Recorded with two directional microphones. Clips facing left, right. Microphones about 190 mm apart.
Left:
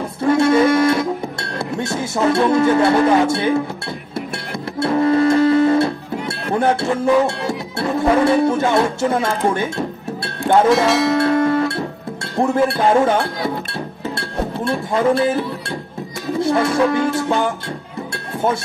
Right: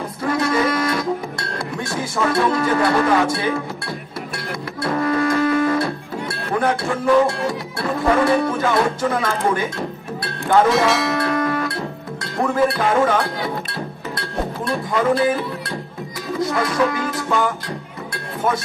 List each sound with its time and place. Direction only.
0.2 s speech: 25° left (ahead or behind)
4.7 s music: 25° left (ahead or behind)
6.5 s speech: 25° left (ahead or behind)
10.4 s music: centre (ahead or behind)
11.1 s music: 25° left (ahead or behind)
12.4 s speech: 25° left (ahead or behind)
14.1 s music: 25° left (ahead or behind)
16.3 s music: 25° left (ahead or behind)